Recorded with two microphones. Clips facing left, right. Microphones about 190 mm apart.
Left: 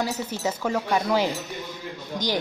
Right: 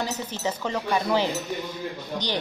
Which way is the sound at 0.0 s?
10° left (ahead or behind).